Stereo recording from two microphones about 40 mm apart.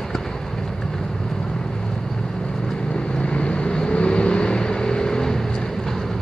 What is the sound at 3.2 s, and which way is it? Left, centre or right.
Vehicle, left.